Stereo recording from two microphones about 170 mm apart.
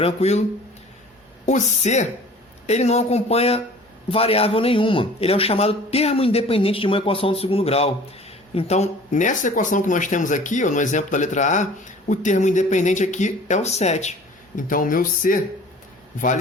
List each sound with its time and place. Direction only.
0.0 s a man's voice: 40° left (ahead or behind)
1.5 s a man's voice: 45° left (ahead or behind)